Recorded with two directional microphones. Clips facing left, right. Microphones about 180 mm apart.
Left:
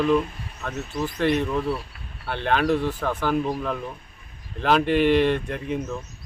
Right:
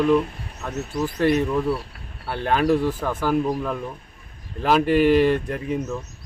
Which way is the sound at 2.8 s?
10° right (ahead or behind).